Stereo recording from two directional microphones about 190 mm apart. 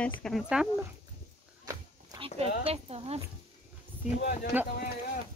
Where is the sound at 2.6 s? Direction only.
30° right (ahead or behind).